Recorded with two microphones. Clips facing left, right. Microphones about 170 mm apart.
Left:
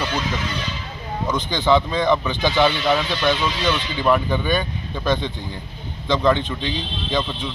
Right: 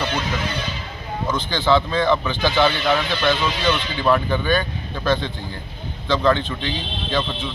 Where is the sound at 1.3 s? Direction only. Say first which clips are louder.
Left 1 dB; 15° left (ahead or behind).